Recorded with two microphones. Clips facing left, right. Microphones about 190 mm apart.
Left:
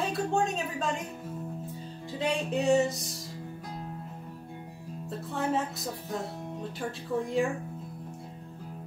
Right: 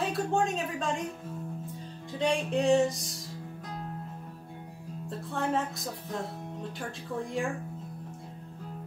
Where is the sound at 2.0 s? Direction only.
5° left (ahead or behind).